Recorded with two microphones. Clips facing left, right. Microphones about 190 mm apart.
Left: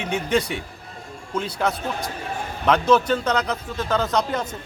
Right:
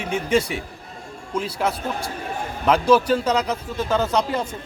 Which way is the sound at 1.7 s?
30° right (ahead or behind).